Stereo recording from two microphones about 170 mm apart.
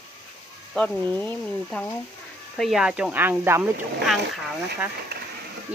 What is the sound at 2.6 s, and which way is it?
Speech, centre (ahead or behind).